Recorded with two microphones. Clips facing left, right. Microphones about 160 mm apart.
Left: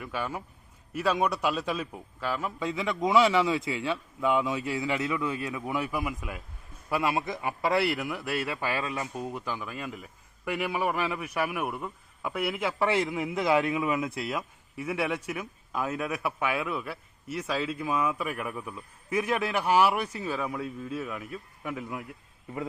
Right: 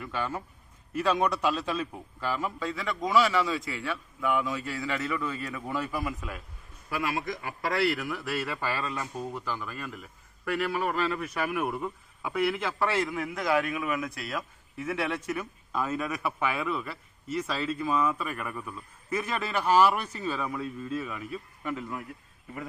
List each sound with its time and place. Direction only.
0.0 s a man's voice: 10° left (ahead or behind)
2.6 s a man's voice: 20° left (ahead or behind)
6.9 s a man's voice: 25° left (ahead or behind)
14.8 s a man's voice: 10° left (ahead or behind)